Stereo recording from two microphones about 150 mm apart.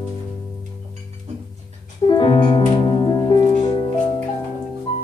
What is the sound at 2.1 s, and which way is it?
Music, 30° left (ahead or behind).